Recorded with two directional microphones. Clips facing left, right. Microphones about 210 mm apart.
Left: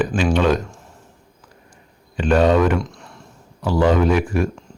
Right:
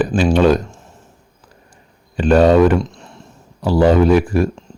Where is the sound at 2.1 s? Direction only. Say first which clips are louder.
Right 5 dB; 35° right (ahead or behind).